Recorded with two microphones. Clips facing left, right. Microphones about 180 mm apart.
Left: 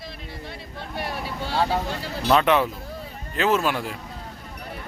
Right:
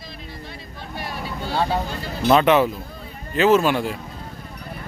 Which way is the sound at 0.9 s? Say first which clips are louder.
Even; 65° left (ahead or behind).